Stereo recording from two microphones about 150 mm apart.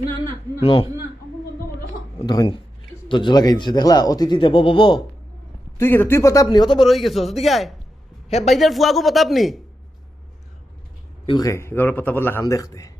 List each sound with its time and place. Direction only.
0.6 s speech: 40° left (ahead or behind)
2.1 s speech: 25° left (ahead or behind)
5.7 s speech: 15° left (ahead or behind); by 6.8 s 30° left (ahead or behind)
6.8 s speech: centre (ahead or behind)
11.3 s a man's voice: 25° left (ahead or behind)